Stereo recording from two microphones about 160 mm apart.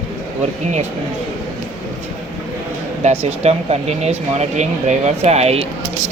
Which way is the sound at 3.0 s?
45° right (ahead or behind).